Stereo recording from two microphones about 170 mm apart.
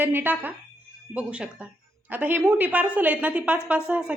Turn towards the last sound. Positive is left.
turn(degrees=-5)  # may be behind; listen again after turning